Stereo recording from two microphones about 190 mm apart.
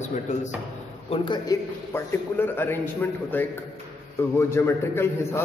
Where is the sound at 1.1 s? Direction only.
25° left (ahead or behind).